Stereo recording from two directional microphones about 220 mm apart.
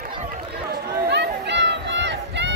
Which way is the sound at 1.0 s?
50° right (ahead or behind).